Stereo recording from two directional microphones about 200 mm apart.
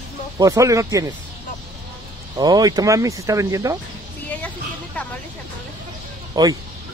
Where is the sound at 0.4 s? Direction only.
15° right (ahead or behind).